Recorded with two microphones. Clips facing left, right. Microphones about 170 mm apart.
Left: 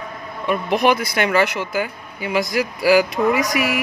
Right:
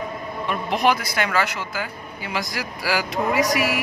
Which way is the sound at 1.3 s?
20° left (ahead or behind).